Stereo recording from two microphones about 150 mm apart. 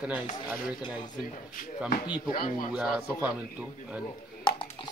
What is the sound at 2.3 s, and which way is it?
Speech, 70° left (ahead or behind).